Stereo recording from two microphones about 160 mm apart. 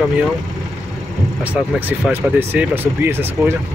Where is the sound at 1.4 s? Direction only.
10° right (ahead or behind).